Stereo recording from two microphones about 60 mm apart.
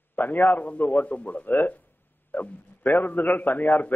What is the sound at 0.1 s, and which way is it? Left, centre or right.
A man's voice, left.